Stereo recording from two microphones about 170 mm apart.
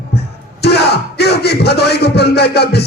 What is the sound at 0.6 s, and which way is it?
Speech, 75° left (ahead or behind).